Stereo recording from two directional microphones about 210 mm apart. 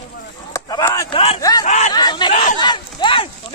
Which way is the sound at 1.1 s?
30° left (ahead or behind).